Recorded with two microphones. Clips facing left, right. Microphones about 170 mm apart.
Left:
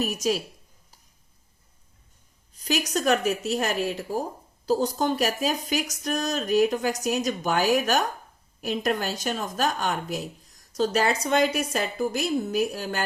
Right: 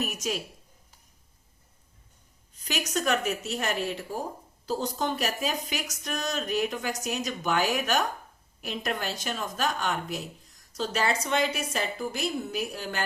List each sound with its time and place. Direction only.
0.0 s speech: 35° left (ahead or behind)
2.6 s speech: 40° left (ahead or behind)